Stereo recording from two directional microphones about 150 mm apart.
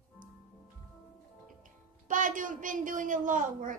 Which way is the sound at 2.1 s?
60° right (ahead or behind).